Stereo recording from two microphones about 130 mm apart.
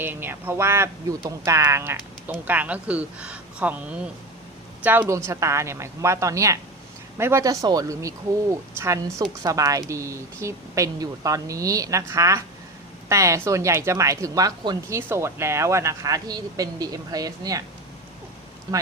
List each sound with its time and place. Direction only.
0.0 s a woman's voice: 15° right (ahead or behind); by 14.8 s 30° right (ahead or behind)
14.8 s speech: 20° right (ahead or behind)